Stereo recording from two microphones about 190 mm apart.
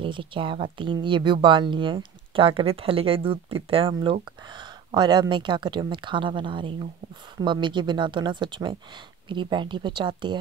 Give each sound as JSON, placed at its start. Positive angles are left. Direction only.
{"t": 0.0, "sound": "a woman's voice", "side_deg": -25}